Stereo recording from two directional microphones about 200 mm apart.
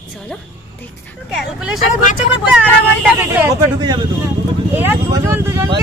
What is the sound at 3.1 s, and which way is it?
Speech, 10° right (ahead or behind).